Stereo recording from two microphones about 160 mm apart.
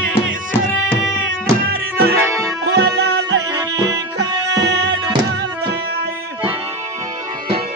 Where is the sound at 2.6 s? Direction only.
90° right.